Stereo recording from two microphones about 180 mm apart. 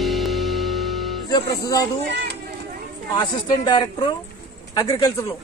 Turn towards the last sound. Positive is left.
turn(degrees=20)  # may be behind; listen again after turning